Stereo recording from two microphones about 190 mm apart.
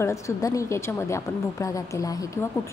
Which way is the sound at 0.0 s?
15° left (ahead or behind).